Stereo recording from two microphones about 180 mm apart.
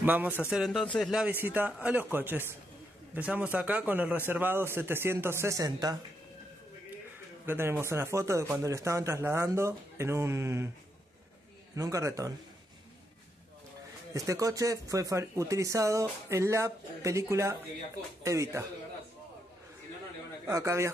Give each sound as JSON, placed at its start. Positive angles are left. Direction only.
{"t": 0.0, "sound": "speech", "side_deg": -10}
{"t": 7.4, "sound": "speech", "side_deg": -10}
{"t": 11.7, "sound": "speech", "side_deg": -15}
{"t": 14.1, "sound": "speech", "side_deg": -20}
{"t": 20.4, "sound": "speech", "side_deg": -15}